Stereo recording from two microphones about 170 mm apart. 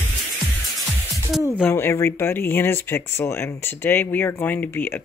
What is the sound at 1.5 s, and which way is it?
Speech, 10° left (ahead or behind).